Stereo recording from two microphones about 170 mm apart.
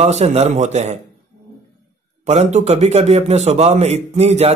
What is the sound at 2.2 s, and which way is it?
A man's voice, 40° right (ahead or behind).